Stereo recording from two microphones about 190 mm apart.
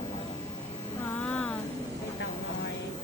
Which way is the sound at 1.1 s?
5° left (ahead or behind).